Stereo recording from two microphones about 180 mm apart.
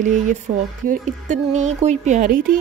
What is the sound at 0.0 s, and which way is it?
Speech, 40° right (ahead or behind).